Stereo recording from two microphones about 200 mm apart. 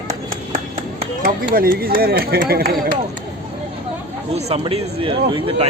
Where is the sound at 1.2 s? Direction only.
50° right (ahead or behind).